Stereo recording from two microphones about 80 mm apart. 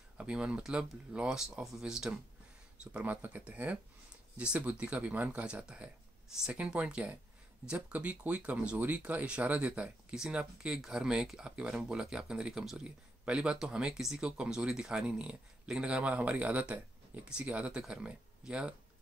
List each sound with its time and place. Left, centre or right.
0.2 s speech: centre